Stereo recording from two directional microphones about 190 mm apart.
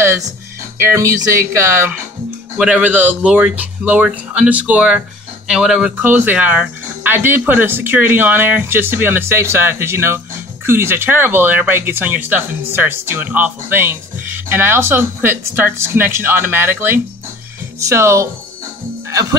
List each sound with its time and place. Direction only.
0.7 s speech: 15° right (ahead or behind)